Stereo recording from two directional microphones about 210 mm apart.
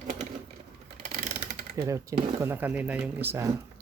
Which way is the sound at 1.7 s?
15° right (ahead or behind).